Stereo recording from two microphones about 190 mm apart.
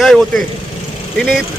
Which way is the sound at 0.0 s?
Centre (ahead or behind).